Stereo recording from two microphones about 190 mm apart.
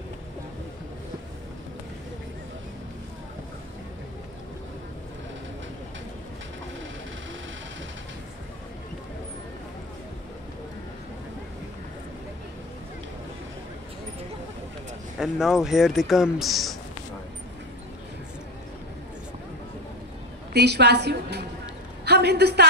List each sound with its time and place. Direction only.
15.1 s speech: 5° right (ahead or behind)
20.5 s a woman's voice: 60° right (ahead or behind)